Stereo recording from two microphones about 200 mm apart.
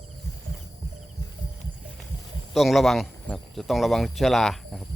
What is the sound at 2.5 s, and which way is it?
Speech, centre (ahead or behind).